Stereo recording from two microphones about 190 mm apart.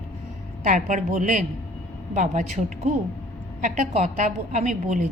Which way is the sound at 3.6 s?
40° right (ahead or behind).